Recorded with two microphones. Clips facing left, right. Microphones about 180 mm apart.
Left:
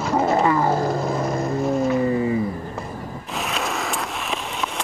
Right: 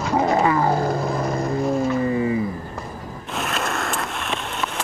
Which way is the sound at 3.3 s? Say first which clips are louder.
Right 1 dB; centre (ahead or behind).